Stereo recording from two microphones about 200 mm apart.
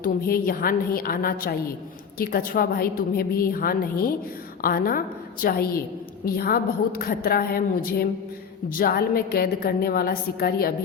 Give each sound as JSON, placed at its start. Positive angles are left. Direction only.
{"t": 0.0, "sound": "a woman's voice", "side_deg": 45}